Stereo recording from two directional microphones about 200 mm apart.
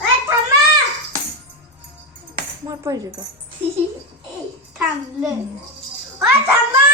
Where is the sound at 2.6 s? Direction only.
15° right (ahead or behind).